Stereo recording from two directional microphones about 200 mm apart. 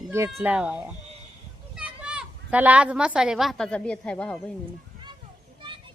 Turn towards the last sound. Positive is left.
turn(degrees=5)  # may be behind; listen again after turning